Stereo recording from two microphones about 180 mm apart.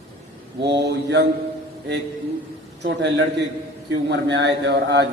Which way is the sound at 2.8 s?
75° right (ahead or behind).